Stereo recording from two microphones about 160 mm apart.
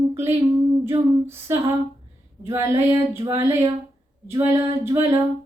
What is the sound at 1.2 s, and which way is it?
Child singing, 15° right (ahead or behind).